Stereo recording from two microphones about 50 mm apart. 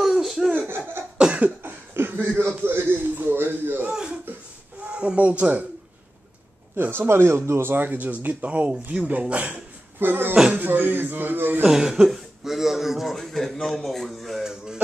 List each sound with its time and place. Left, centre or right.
0.0 s laughter: centre
0.6 s laughter: right
1.1 s cough: centre
1.6 s cough: right
2.1 s speech: right
2.6 s a man's voice: right
3.9 s a sound: centre
4.8 s speech: right
6.8 s speech: right
7.7 s a man's voice: right
9.9 s speech: right
11.6 s a man's voice: centre
13.7 s a sound: centre